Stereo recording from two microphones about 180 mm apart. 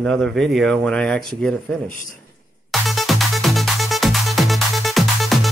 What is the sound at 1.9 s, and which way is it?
Speech, 50° left (ahead or behind).